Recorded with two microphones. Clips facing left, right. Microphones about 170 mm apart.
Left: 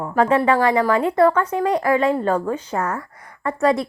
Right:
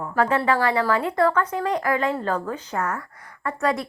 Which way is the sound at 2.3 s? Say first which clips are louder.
Left 5 dB; 25° left (ahead or behind).